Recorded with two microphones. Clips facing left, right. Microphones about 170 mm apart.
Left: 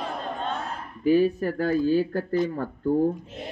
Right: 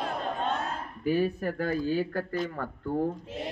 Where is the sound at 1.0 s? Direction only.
50° right (ahead or behind).